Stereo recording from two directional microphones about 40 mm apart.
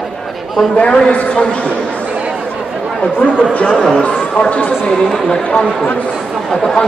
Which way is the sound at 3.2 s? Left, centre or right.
Left.